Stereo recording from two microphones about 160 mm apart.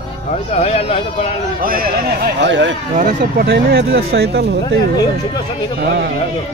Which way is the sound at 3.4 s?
90° right.